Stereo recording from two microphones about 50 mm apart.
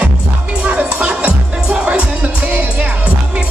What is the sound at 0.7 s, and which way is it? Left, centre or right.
Music, right.